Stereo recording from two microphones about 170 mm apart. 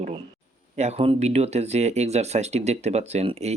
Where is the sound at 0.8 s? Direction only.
40° right (ahead or behind).